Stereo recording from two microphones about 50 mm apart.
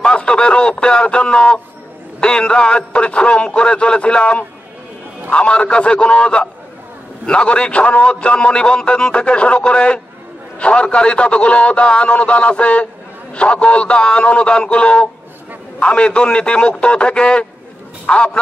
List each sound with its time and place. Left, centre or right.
0.0 s a man's voice: centre